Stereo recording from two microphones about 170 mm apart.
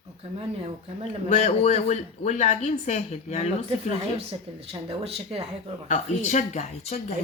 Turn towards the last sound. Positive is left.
turn(degrees=40)  # may be behind; listen again after turning